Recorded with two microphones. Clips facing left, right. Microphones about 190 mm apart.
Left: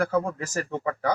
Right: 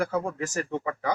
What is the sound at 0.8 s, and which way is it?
Speech, 40° left (ahead or behind).